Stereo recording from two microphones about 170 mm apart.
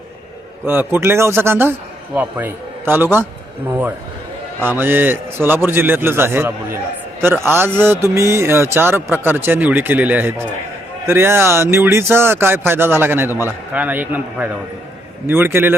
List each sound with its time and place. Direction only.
0.6 s speech: 10° right (ahead or behind)